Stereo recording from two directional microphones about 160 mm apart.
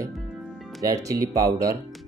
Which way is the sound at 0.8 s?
20° right (ahead or behind).